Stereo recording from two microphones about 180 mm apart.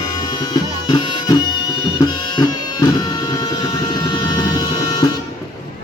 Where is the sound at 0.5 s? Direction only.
20° left (ahead or behind).